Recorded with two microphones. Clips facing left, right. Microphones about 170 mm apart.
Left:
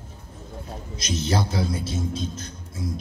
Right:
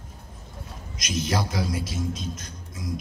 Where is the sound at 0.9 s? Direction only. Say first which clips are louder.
Left 2 dB; 30° left (ahead or behind).